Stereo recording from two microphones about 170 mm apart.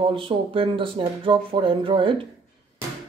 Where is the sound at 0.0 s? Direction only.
30° right (ahead or behind).